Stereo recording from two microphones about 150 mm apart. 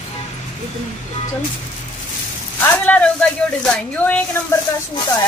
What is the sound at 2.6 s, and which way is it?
Speech, 10° left (ahead or behind).